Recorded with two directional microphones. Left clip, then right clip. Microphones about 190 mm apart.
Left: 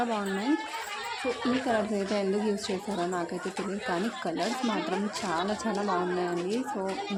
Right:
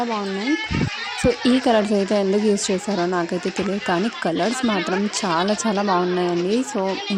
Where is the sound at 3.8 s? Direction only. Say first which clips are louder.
Right 8 dB; 45° right (ahead or behind).